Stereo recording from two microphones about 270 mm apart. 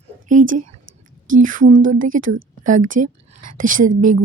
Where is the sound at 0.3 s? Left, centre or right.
Right.